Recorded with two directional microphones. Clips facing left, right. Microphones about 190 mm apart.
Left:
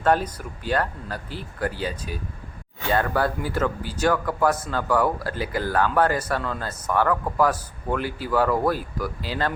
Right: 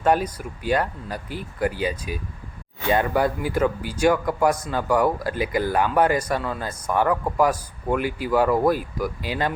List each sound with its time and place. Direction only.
0.0 s speech: 10° right (ahead or behind)